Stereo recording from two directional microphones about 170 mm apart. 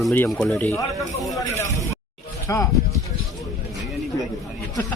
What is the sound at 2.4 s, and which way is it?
Speech, 15° left (ahead or behind).